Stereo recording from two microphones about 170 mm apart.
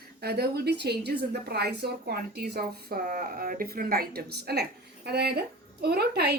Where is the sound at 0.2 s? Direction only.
70° right (ahead or behind).